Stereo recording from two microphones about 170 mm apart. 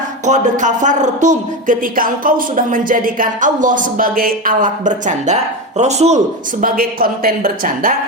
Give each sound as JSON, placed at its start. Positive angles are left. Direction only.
{"t": 0.3, "sound": "a woman's voice", "side_deg": -45}